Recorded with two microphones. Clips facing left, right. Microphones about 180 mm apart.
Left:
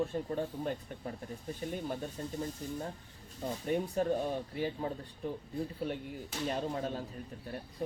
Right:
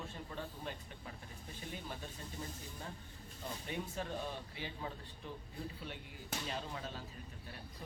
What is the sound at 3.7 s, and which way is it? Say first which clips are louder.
Speech: left 12 dB; 45° left (ahead or behind).